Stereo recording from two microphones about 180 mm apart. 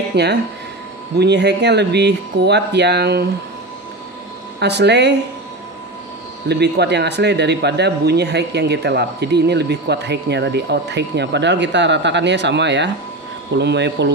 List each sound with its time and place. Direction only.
0.1 s speech: 70° right (ahead or behind)
4.6 s speech: 70° right (ahead or behind)
6.5 s speech: 70° right (ahead or behind)